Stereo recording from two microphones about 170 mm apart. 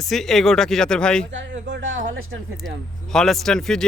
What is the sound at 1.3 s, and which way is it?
Speech, 90° right.